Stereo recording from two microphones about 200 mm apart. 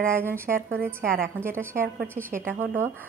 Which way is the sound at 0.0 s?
10° right (ahead or behind).